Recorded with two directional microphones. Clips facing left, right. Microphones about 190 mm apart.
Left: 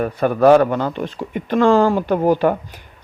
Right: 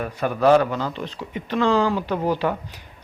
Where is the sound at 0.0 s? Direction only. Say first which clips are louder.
Left 6 dB; 55° left (ahead or behind).